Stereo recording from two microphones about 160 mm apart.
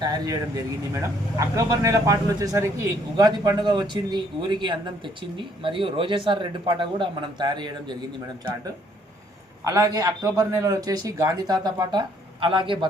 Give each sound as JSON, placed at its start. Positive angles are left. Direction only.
{"t": 0.0, "sound": "speech", "side_deg": -25}
{"t": 9.6, "sound": "speech", "side_deg": -20}